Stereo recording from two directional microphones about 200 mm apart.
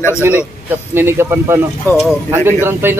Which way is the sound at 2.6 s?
10° right (ahead or behind).